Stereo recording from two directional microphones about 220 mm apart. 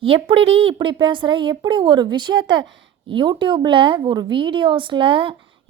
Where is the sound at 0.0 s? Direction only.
25° right (ahead or behind).